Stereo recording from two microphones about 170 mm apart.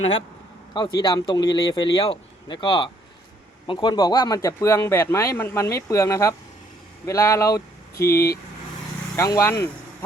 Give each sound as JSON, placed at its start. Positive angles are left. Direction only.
{"t": 0.7, "sound": "speech", "side_deg": 25}